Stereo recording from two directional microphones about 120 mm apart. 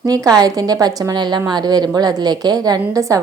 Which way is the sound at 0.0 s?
30° right (ahead or behind).